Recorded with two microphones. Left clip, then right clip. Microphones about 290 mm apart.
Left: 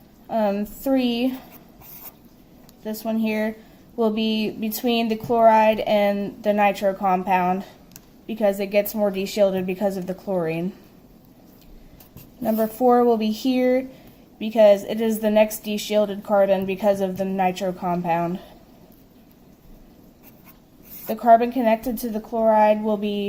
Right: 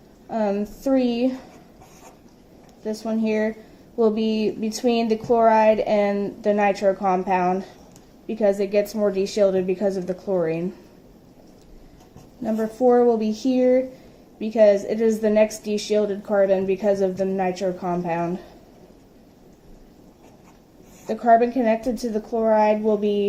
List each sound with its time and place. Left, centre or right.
0.3 s a woman's voice: centre
2.8 s a woman's voice: centre
12.4 s a woman's voice: centre
21.1 s a woman's voice: centre